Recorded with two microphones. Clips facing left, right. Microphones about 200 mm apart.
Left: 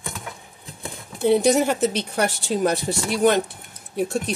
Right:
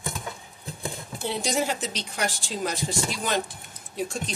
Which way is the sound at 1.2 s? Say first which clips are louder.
Left 10 dB; 60° left (ahead or behind).